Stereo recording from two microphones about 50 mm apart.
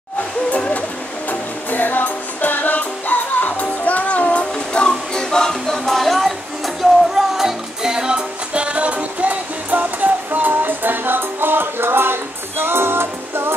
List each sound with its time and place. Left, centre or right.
0.5 s music: left
1.7 s music: left; by 13.6 s right